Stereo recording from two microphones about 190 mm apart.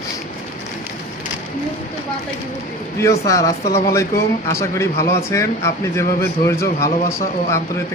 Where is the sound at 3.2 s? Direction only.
15° left (ahead or behind).